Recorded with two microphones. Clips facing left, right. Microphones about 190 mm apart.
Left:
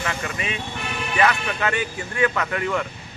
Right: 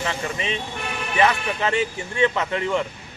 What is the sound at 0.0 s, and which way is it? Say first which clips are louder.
A man's voice: right 1 dB; 30° right (ahead or behind).